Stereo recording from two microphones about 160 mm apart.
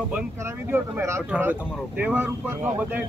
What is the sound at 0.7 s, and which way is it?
Speech, 15° right (ahead or behind).